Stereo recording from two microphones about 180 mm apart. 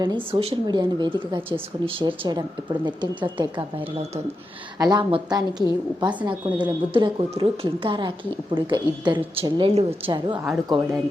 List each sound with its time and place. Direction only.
0.0 s a woman's voice: 25° right (ahead or behind)
4.8 s a woman's voice: 25° right (ahead or behind)